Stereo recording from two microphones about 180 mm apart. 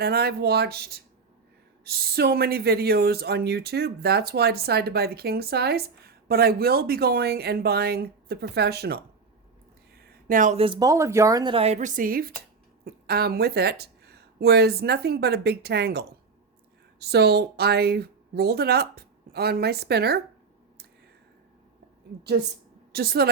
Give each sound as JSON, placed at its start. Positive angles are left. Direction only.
{"t": 0.0, "sound": "speech", "side_deg": -60}
{"t": 10.0, "sound": "a sound", "side_deg": -50}
{"t": 10.6, "sound": "speech", "side_deg": -25}
{"t": 11.5, "sound": "a woman's voice", "side_deg": -35}
{"t": 22.9, "sound": "a woman's voice", "side_deg": -60}